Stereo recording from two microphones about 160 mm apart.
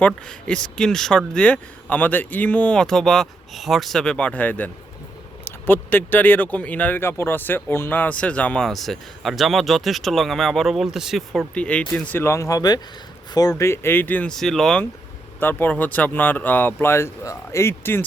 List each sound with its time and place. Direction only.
0.0 s speech: 5° left (ahead or behind)